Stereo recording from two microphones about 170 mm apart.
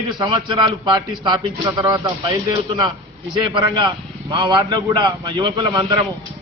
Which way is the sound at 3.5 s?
25° right (ahead or behind).